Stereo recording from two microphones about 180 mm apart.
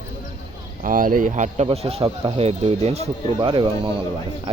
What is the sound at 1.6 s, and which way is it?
Speech, 35° right (ahead or behind).